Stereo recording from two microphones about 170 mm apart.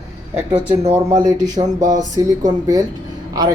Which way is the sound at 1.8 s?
50° right (ahead or behind).